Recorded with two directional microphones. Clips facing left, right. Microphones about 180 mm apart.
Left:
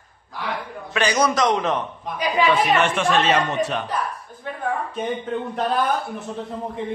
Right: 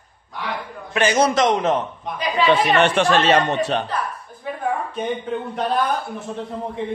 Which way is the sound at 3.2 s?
30° right (ahead or behind).